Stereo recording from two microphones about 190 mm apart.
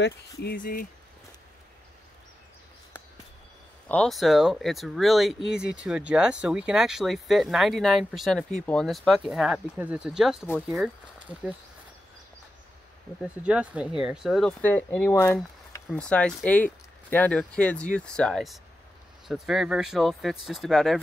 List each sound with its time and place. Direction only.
0.0 s speech: 55° left (ahead or behind)
3.9 s speech: 5° left (ahead or behind)
13.2 s speech: 5° right (ahead or behind)